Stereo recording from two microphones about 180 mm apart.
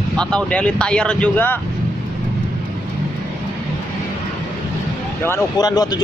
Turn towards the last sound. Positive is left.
turn(degrees=20)  # may be behind; listen again after turning